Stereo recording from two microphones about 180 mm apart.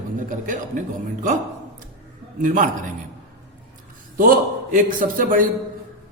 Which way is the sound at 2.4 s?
50° right (ahead or behind).